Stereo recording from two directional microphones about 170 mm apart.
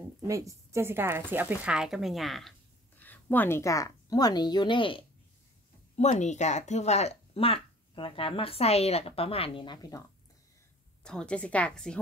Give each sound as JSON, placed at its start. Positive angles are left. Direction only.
{"t": 0.3, "sound": "a woman's voice", "side_deg": -20}
{"t": 5.9, "sound": "speech", "side_deg": 40}
{"t": 11.1, "sound": "a woman's voice", "side_deg": 5}